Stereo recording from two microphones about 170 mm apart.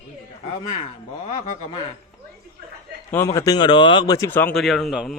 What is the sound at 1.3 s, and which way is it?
Speech, 45° left (ahead or behind).